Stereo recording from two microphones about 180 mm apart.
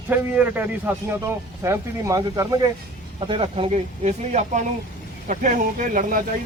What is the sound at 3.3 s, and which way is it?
Speech, 30° right (ahead or behind).